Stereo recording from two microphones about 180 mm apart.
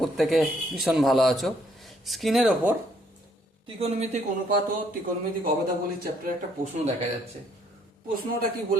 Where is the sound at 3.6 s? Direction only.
35° right (ahead or behind).